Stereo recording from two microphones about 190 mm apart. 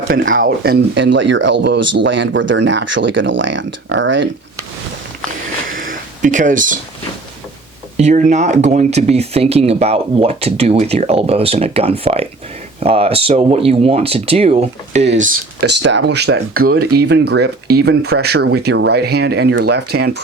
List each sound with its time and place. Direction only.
0.3 s speech: 55° right (ahead or behind); by 4.3 s 75° right (ahead or behind)
5.7 s a sound: 45° right (ahead or behind)
7.9 s speech: 40° right (ahead or behind)
15.6 s speech: 70° right (ahead or behind)